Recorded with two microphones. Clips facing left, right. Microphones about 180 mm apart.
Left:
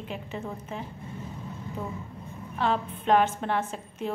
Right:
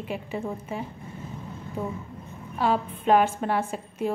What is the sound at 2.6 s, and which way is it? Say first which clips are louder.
A woman's voice: right 3 dB; 10° right (ahead or behind).